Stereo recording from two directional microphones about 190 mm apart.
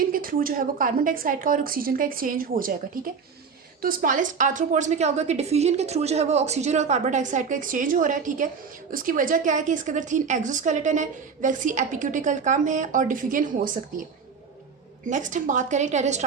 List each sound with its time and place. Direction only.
0.0 s a woman's voice: 50° right (ahead or behind)
15.0 s speech: 40° right (ahead or behind)